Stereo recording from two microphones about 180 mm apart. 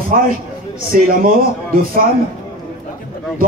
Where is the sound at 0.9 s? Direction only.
45° right (ahead or behind).